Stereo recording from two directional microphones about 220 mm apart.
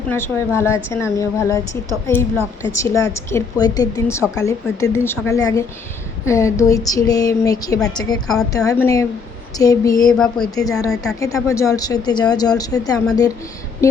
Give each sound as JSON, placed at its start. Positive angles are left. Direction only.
{"t": 0.1, "sound": "speech", "side_deg": 10}
{"t": 10.1, "sound": "speech", "side_deg": 5}
{"t": 10.4, "sound": "speech", "side_deg": 15}
{"t": 10.9, "sound": "speech", "side_deg": 0}
{"t": 11.4, "sound": "speech", "side_deg": 15}